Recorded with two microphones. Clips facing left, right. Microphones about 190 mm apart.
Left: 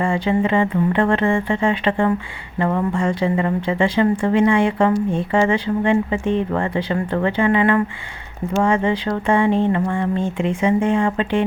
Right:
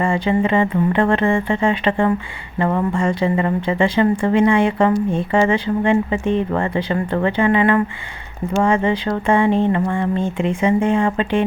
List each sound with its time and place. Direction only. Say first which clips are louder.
0.0 s speech: right 1 dB; 25° right (ahead or behind)